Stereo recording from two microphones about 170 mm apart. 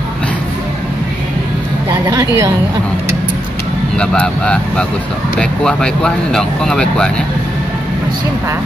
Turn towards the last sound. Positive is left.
turn(degrees=5)  # may be behind; listen again after turning